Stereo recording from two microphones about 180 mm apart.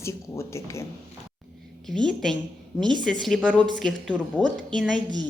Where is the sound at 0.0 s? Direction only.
15° left (ahead or behind).